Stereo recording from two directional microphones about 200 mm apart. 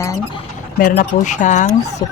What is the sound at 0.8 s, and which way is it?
Speech, 45° left (ahead or behind).